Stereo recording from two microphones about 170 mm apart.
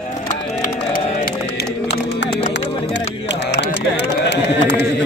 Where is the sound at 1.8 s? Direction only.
90° left.